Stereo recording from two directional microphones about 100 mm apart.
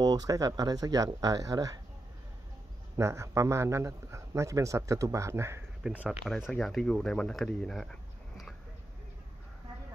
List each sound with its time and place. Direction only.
0.0 s speech: 40° right (ahead or behind)
3.0 s speech: 30° right (ahead or behind)
5.9 s speech: 5° right (ahead or behind)
6.5 s speech: 5° left (ahead or behind)